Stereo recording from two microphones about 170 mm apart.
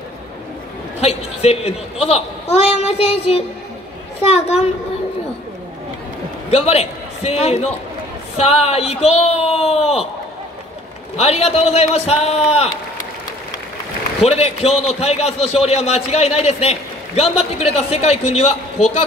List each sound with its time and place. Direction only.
1.0 s speech: 40° left (ahead or behind)
6.5 s a man's voice: 40° left (ahead or behind)
11.1 s speech: 35° left (ahead or behind)
14.2 s speech: 35° left (ahead or behind)